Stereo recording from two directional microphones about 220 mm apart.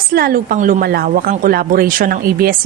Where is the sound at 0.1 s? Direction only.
40° right (ahead or behind).